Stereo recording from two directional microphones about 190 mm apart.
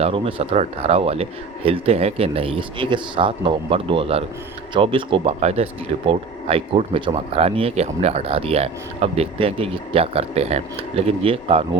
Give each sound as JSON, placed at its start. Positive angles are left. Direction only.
{"t": 0.0, "sound": "speech", "side_deg": -30}